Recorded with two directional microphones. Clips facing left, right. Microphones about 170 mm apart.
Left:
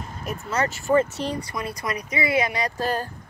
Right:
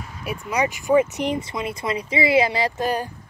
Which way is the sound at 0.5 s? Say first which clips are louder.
Right 2 dB; 15° right (ahead or behind).